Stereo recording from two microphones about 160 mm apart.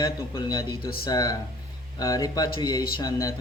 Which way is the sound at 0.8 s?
70° left (ahead or behind).